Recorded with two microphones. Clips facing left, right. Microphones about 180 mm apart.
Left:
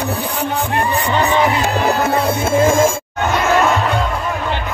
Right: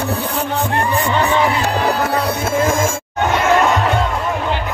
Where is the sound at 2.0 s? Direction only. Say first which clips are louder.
Left 2 dB; 25° left (ahead or behind).